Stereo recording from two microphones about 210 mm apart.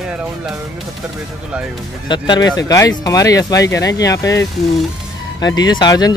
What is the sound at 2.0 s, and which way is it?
Speech, 20° left (ahead or behind).